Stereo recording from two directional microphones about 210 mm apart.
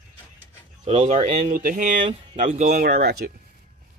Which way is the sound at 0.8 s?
30° right (ahead or behind).